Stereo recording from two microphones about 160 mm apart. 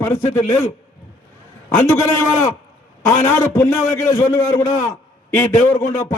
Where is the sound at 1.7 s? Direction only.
20° left (ahead or behind).